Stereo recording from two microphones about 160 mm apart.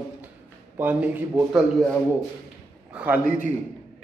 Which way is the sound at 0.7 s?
10° right (ahead or behind).